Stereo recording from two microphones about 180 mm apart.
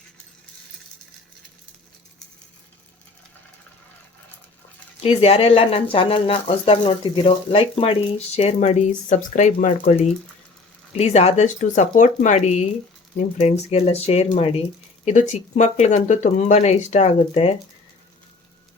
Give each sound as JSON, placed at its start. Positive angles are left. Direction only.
{"t": 4.9, "sound": "speech", "side_deg": 35}
{"t": 10.9, "sound": "speech", "side_deg": 35}